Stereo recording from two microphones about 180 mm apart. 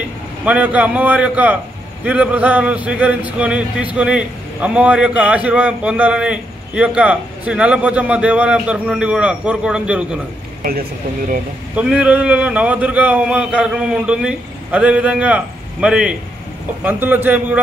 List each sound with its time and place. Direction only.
0.5 s speech: 10° right (ahead or behind)
10.6 s speech: 55° right (ahead or behind)
11.7 s speech: 5° right (ahead or behind)